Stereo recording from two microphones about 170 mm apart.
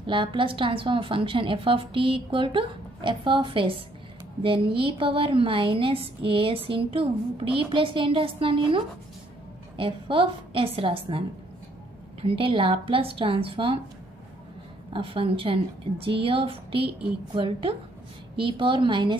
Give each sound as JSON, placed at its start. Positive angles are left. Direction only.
{"t": 0.0, "sound": "a woman's voice", "side_deg": -30}
{"t": 14.9, "sound": "a woman's voice", "side_deg": -30}